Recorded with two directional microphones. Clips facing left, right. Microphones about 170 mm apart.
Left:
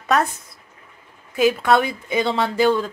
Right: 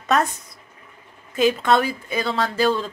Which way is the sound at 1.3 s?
10° left (ahead or behind).